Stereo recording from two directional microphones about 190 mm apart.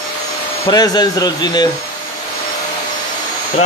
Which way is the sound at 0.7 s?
20° left (ahead or behind).